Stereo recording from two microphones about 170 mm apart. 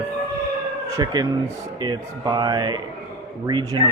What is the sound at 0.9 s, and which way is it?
Speech, 20° right (ahead or behind).